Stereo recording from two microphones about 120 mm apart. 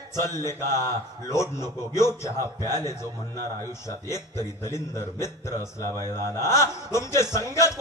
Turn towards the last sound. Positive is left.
turn(degrees=25)  # may be behind; listen again after turning